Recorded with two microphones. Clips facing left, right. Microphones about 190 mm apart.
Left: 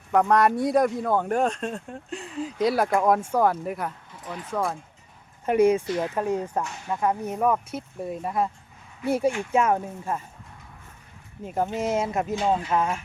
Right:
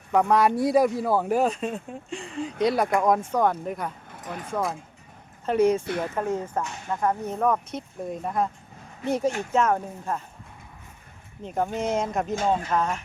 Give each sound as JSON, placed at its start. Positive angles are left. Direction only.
{"t": 0.1, "sound": "speech", "side_deg": 0}
{"t": 4.1, "sound": "a sound", "side_deg": -55}
{"t": 4.5, "sound": "speech", "side_deg": 0}
{"t": 5.5, "sound": "speech", "side_deg": 10}
{"t": 11.4, "sound": "speech", "side_deg": 5}